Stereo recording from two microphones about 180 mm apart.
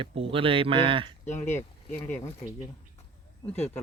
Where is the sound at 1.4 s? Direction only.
10° left (ahead or behind).